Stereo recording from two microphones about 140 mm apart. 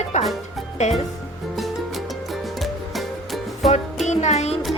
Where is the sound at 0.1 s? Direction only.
60° left (ahead or behind).